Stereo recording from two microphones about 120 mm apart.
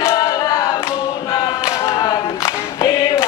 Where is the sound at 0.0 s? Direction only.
25° left (ahead or behind).